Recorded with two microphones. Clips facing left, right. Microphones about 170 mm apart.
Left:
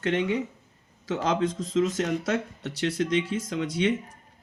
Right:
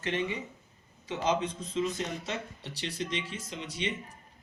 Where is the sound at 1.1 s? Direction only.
90° left.